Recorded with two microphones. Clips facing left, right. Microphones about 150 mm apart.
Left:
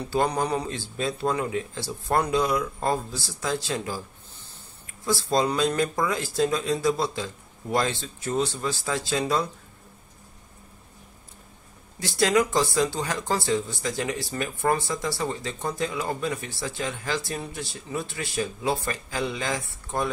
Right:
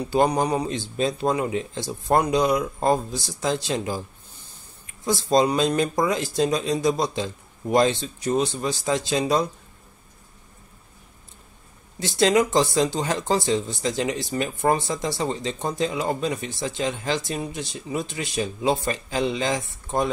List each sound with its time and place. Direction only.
0.1 s speech: 15° right (ahead or behind)
12.0 s speech: 25° right (ahead or behind)